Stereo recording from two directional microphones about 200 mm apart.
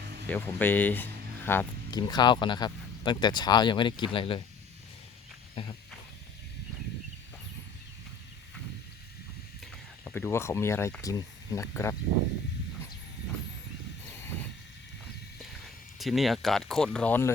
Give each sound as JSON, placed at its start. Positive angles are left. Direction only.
{"t": 0.3, "sound": "speech", "side_deg": 10}
{"t": 10.0, "sound": "speech", "side_deg": 10}
{"t": 16.0, "sound": "speech", "side_deg": 0}